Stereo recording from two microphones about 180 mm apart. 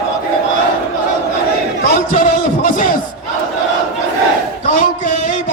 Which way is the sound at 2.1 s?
50° left (ahead or behind).